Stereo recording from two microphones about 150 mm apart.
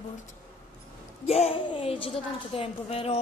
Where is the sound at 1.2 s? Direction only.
45° left (ahead or behind).